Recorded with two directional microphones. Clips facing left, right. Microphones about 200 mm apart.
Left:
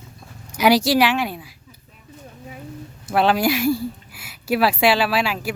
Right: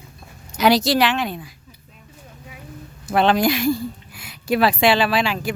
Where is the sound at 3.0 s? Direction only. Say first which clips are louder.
Right 1 dB; 5° left (ahead or behind).